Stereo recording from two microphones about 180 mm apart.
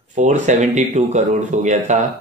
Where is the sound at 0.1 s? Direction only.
40° right (ahead or behind).